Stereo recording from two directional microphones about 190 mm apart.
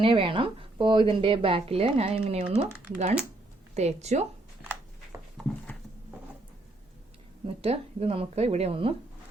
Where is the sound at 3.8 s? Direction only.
35° right (ahead or behind).